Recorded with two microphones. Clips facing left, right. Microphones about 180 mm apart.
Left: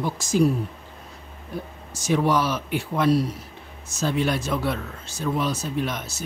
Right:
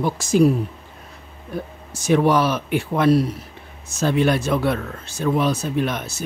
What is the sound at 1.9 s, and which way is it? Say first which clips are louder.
Speech: right 4 dB; 60° right (ahead or behind).